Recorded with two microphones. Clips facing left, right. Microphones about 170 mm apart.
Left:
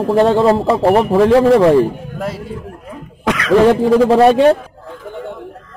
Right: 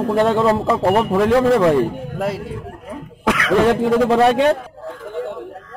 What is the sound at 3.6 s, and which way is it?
Speech, 30° left (ahead or behind).